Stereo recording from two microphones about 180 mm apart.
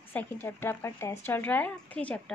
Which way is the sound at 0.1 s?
10° left (ahead or behind).